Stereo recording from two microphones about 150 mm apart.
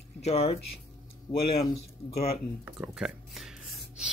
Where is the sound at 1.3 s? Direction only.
20° left (ahead or behind).